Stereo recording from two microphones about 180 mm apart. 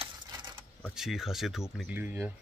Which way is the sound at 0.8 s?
Centre (ahead or behind).